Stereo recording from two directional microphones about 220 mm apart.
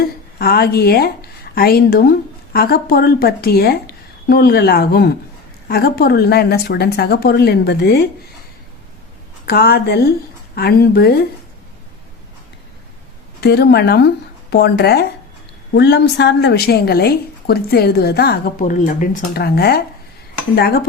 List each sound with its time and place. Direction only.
0.3 s a woman's voice: 45° left (ahead or behind)
9.5 s a woman's voice: 45° left (ahead or behind)
13.4 s a woman's voice: 45° left (ahead or behind)